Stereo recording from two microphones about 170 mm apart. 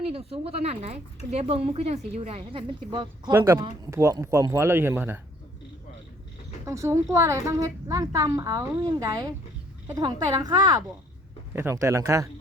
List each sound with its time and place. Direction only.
0.1 s a woman's voice: 35° right (ahead or behind)
3.3 s speech: 15° right (ahead or behind)
6.7 s a woman's voice: 15° right (ahead or behind)